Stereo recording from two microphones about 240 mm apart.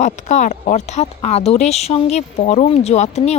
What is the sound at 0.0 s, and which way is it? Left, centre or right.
Speech, left.